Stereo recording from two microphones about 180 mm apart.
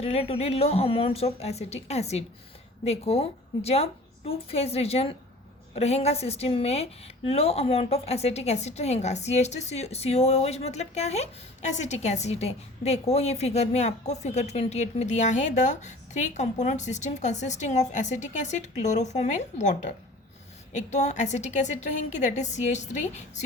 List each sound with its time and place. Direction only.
0.0 s a woman's voice: 35° left (ahead or behind)